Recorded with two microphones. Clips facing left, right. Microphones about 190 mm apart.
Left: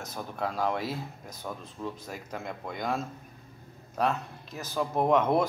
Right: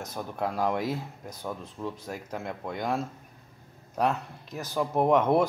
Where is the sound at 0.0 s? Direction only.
15° right (ahead or behind).